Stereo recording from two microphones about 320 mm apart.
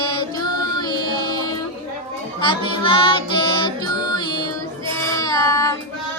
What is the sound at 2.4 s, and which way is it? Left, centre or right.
Music, centre.